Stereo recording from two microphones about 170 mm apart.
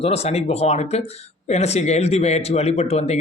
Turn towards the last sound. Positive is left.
turn(degrees=40)  # may be behind; listen again after turning